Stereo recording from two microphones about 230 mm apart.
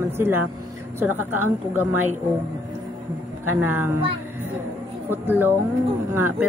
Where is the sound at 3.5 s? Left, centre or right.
Centre.